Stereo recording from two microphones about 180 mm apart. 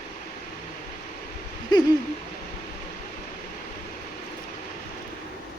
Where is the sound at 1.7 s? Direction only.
20° left (ahead or behind).